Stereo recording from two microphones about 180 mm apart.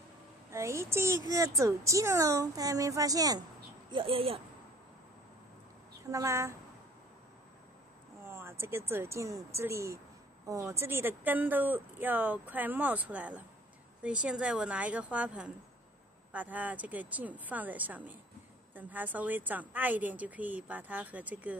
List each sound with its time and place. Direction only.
0.5 s speech: 15° right (ahead or behind)
6.0 s speech: 15° right (ahead or behind)
8.2 s speech: 15° right (ahead or behind)